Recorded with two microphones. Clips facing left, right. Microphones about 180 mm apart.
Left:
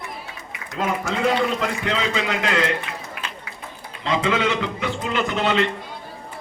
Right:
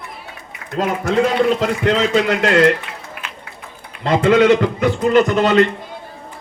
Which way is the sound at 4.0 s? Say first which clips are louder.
Right 9 dB; 55° right (ahead or behind).